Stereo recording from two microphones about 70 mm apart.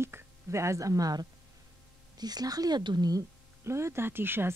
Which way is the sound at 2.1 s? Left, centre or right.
Right.